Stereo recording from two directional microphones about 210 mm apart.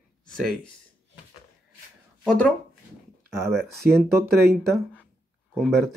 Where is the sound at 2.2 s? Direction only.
5° left (ahead or behind).